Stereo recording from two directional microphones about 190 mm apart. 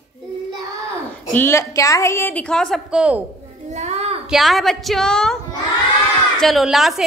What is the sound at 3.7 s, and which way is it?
Child singing, 35° right (ahead or behind).